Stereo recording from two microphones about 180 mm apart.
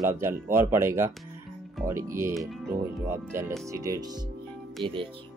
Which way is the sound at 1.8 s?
45° right (ahead or behind).